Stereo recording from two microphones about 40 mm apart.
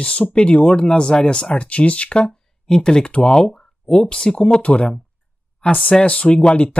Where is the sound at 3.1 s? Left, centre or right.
Left.